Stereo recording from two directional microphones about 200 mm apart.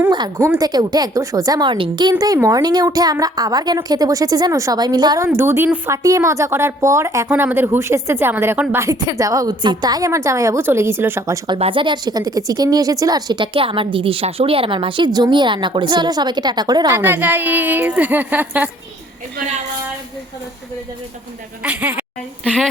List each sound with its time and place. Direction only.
0.1 s a woman's voice: 20° right (ahead or behind)
11.4 s speech: 25° right (ahead or behind)
17.0 s a woman's voice: 10° right (ahead or behind)
21.6 s a woman's voice: 5° right (ahead or behind)